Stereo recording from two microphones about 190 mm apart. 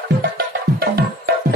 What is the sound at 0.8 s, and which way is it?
Music, 55° right (ahead or behind).